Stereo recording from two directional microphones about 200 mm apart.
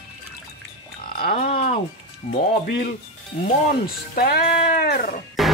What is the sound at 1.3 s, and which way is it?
Speech, 30° left (ahead or behind).